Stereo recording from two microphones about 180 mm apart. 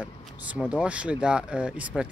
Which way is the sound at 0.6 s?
5° right (ahead or behind).